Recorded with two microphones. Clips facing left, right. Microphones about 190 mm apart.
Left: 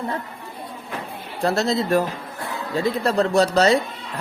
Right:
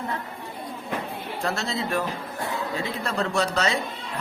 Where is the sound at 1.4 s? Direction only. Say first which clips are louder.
Left 8 dB; 35° left (ahead or behind).